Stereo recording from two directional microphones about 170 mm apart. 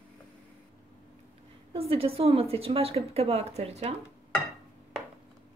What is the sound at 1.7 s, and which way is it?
A woman's voice, 35° right (ahead or behind).